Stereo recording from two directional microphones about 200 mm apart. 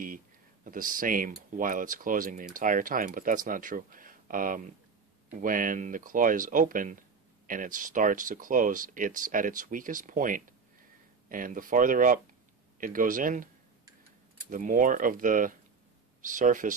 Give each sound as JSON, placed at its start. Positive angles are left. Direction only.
{"t": 0.7, "sound": "speech", "side_deg": -45}
{"t": 14.5, "sound": "speech", "side_deg": -40}